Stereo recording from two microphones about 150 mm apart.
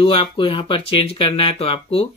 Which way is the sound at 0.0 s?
35° left (ahead or behind).